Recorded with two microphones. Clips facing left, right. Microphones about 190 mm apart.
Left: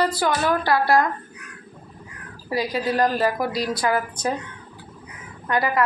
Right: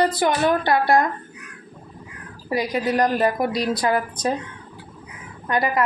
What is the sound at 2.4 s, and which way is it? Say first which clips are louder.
A woman's voice: right 1 dB; 20° right (ahead or behind).